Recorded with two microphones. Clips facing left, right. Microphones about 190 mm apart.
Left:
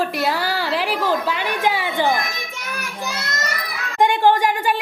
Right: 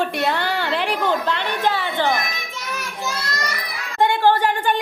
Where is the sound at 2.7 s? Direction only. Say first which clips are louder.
Right 1 dB; 15° left (ahead or behind).